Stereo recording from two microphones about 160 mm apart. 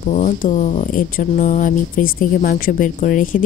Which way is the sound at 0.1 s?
50° left (ahead or behind).